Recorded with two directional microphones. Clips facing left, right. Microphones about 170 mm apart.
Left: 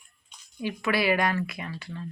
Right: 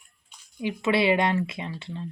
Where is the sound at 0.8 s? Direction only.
25° right (ahead or behind).